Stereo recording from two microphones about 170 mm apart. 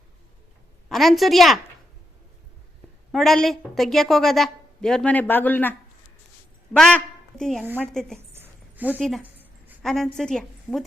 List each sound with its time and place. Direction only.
0.9 s a woman's voice: centre (ahead or behind)
3.1 s a woman's voice: centre (ahead or behind)
6.7 s a woman's voice: 5° left (ahead or behind)
7.6 s a woman's voice: 10° right (ahead or behind)
7.9 s a woman's voice: 5° left (ahead or behind)
8.3 s a sound: 10° right (ahead or behind)
9.8 s a woman's voice: centre (ahead or behind)